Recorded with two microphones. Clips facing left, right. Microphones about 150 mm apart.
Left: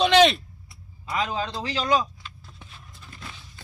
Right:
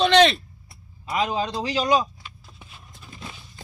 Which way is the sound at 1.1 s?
15° right (ahead or behind).